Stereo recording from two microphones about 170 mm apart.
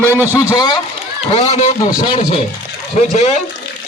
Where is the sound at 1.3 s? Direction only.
40° left (ahead or behind).